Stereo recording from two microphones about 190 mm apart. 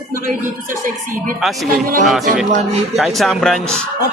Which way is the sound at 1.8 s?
45° right (ahead or behind).